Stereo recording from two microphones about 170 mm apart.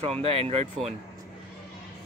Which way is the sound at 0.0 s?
35° right (ahead or behind).